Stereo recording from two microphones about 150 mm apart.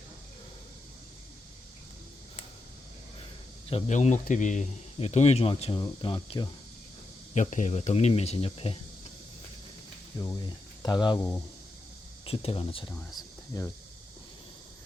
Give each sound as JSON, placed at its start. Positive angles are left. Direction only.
{"t": 3.7, "sound": "speech", "side_deg": 40}
{"t": 3.9, "sound": "speech", "side_deg": 55}
{"t": 4.9, "sound": "speech", "side_deg": 45}
{"t": 7.3, "sound": "speech", "side_deg": 55}
{"t": 10.2, "sound": "speech", "side_deg": 25}
{"t": 11.2, "sound": "speech", "side_deg": 15}
{"t": 12.2, "sound": "speech", "side_deg": 40}